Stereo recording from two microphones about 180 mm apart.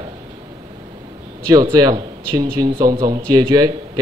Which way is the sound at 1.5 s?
20° right (ahead or behind).